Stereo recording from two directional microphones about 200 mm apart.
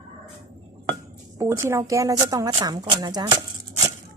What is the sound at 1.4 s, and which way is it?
Speech, 15° right (ahead or behind).